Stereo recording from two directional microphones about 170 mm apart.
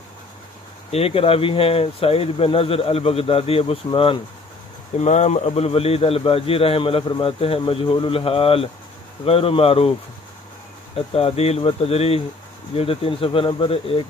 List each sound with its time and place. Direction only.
0.9 s speech: 35° left (ahead or behind)
4.9 s speech: 40° left (ahead or behind)
11.0 s speech: 35° left (ahead or behind)